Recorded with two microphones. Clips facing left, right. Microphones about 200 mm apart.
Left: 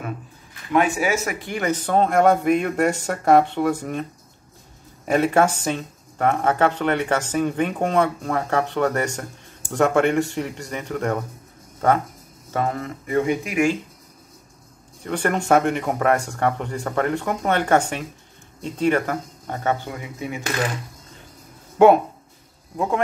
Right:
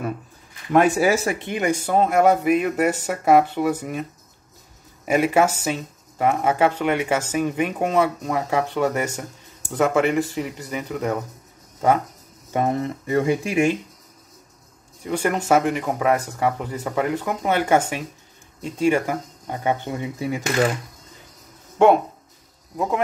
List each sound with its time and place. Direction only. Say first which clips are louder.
0.7 s speech: right 3 dB; 40° right (ahead or behind); by 4.0 s 5° right (ahead or behind)
5.0 s speech: even; 10° right (ahead or behind)
12.5 s speech: right 3 dB; 20° right (ahead or behind)
15.0 s speech: even; 10° right (ahead or behind)
19.9 s speech: right 4 dB; 30° right (ahead or behind)
21.7 s speech: left 2 dB; 5° left (ahead or behind)